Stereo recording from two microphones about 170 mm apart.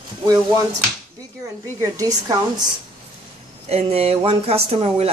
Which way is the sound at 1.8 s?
20° right (ahead or behind).